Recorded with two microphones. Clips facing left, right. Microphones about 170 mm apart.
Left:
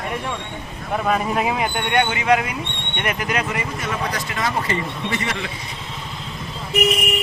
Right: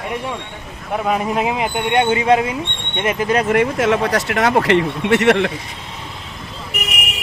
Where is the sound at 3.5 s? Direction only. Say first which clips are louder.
Right 11 dB; 80° right.